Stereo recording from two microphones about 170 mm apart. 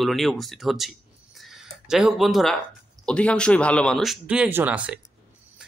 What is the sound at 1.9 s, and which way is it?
Speech, centre (ahead or behind).